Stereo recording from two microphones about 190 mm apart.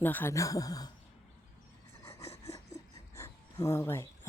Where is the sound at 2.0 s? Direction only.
15° left (ahead or behind).